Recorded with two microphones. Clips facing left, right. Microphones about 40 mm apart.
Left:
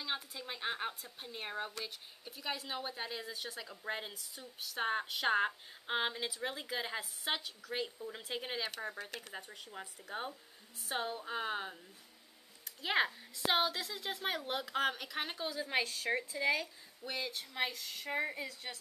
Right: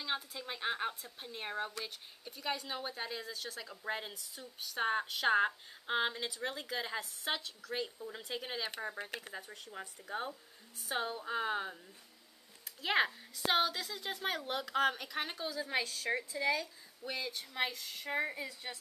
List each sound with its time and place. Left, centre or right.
0.0 s a woman's voice: centre
9.0 s speech: right
9.4 s speech: centre
12.8 s a woman's voice: centre
17.0 s a woman's voice: centre